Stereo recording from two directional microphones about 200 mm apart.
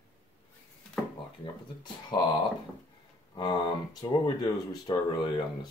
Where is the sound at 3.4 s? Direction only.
20° left (ahead or behind).